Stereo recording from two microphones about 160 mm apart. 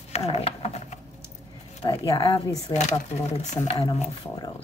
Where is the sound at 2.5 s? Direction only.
45° left (ahead or behind).